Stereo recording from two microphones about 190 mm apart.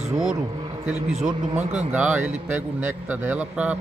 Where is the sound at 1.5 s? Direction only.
35° right (ahead or behind).